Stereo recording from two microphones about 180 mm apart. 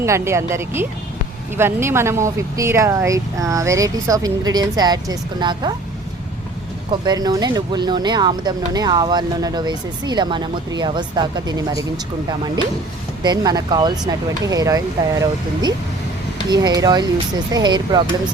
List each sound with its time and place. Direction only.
0.0 s speech: 15° right (ahead or behind)
6.9 s speech: 20° right (ahead or behind)
13.2 s speech: 20° right (ahead or behind)
16.5 s speech: 20° right (ahead or behind)